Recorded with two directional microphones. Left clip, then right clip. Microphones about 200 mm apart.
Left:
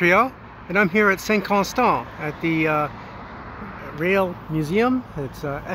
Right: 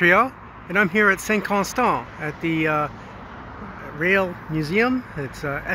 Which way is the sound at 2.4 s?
45° left (ahead or behind).